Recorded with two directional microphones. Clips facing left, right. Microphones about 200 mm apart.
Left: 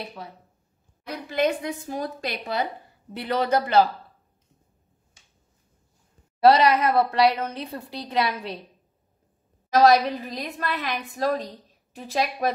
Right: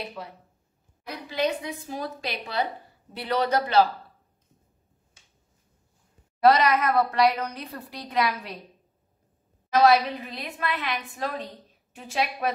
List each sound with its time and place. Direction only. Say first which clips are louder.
1.3 s a woman's voice: left 3 dB; 50° left (ahead or behind)
6.4 s a woman's voice: left 2 dB; 30° left (ahead or behind)
9.7 s a woman's voice: left 2 dB; 40° left (ahead or behind)